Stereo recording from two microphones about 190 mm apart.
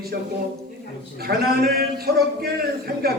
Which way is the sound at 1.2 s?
55° right (ahead or behind).